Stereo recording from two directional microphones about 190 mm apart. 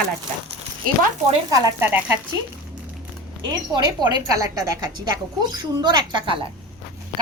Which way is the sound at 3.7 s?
20° right (ahead or behind).